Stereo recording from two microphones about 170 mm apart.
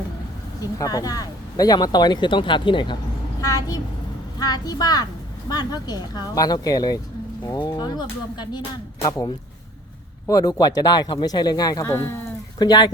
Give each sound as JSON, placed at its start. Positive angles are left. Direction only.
{"t": 0.6, "sound": "a woman's voice", "side_deg": 20}